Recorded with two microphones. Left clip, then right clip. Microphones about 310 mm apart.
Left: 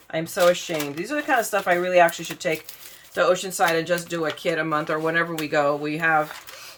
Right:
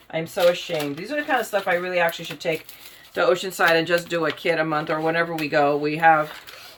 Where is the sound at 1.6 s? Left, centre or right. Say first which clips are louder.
Left 3 dB; centre.